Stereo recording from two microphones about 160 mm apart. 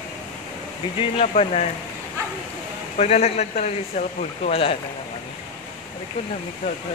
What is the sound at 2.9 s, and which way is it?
Speech, 45° left (ahead or behind).